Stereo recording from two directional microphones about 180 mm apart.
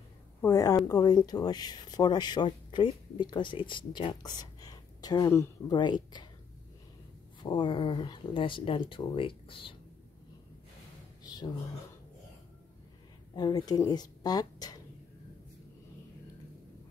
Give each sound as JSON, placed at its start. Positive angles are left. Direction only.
{"t": 0.4, "sound": "speech", "side_deg": 20}
{"t": 7.4, "sound": "speech", "side_deg": 25}
{"t": 11.2, "sound": "speech", "side_deg": 25}
{"t": 13.3, "sound": "speech", "side_deg": 25}